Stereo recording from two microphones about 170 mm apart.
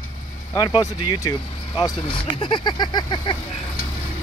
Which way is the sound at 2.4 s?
30° left (ahead or behind).